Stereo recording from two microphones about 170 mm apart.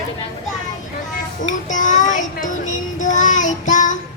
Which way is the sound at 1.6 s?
50° left (ahead or behind).